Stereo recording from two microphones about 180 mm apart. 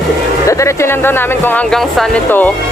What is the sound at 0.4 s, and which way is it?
Speech, 15° left (ahead or behind).